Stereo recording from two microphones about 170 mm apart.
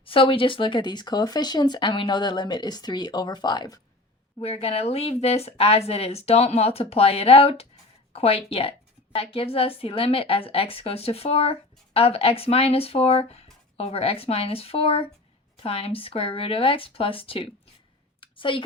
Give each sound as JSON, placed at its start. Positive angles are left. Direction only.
{"t": 0.0, "sound": "speech", "side_deg": 30}
{"t": 4.4, "sound": "speech", "side_deg": 35}
{"t": 18.2, "sound": "a sound", "side_deg": 30}